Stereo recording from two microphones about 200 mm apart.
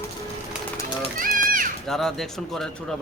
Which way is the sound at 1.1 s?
45° right (ahead or behind).